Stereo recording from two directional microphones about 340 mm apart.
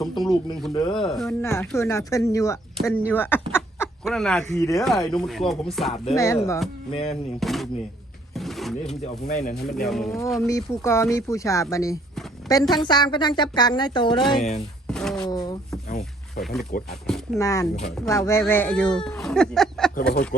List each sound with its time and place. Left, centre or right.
0.2 s speech: centre
0.8 s speech: centre
1.0 s speech: centre
5.9 s speech: centre
7.3 s speech: centre
8.4 s a sound: centre
9.2 s speech: centre
9.8 s speech: centre
14.8 s a sound: centre
15.9 s a sound: left
16.4 s speech: centre